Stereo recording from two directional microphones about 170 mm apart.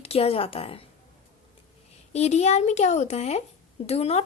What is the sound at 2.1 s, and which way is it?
A woman's voice, 40° left (ahead or behind).